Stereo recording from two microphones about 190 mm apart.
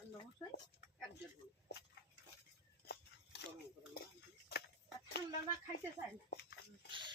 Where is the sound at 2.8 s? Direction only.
60° left (ahead or behind).